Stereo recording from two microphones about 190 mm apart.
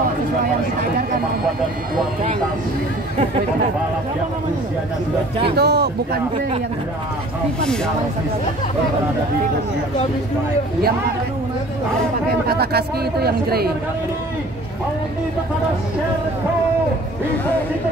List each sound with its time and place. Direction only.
5.4 s a woman's voice: 60° right (ahead or behind)
7.6 s speech: 5° left (ahead or behind)
12.4 s a woman's voice: 55° right (ahead or behind)